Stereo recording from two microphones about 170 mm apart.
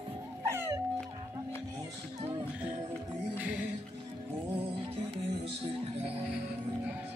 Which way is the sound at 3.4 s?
5° right (ahead or behind).